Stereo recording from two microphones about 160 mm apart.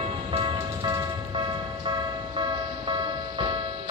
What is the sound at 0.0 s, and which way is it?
Music, 35° right (ahead or behind).